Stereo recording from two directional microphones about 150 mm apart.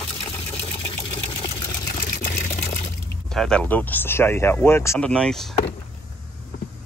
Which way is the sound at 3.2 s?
5° left (ahead or behind).